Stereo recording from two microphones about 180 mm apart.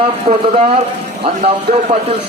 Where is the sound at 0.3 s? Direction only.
35° right (ahead or behind).